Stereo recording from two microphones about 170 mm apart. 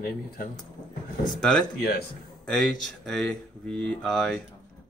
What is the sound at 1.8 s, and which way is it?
Speech, 60° left (ahead or behind).